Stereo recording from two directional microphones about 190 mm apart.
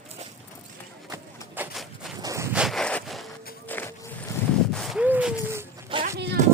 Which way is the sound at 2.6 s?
Centre (ahead or behind).